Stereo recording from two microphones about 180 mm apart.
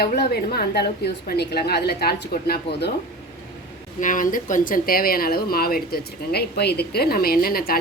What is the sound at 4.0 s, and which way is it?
Speech, 45° left (ahead or behind).